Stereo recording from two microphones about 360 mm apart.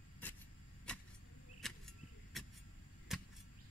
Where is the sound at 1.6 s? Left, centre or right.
Centre.